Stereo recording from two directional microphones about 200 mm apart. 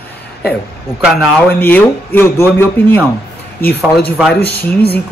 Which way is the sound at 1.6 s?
10° left (ahead or behind).